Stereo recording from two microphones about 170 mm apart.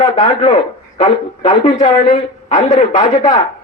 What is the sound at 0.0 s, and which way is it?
A man's voice, 35° left (ahead or behind).